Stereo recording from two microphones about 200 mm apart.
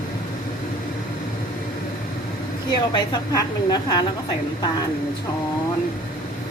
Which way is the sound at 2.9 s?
20° left (ahead or behind).